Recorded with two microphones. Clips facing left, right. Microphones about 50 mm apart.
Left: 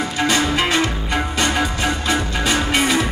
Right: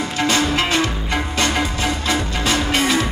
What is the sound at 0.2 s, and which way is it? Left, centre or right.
Music, centre.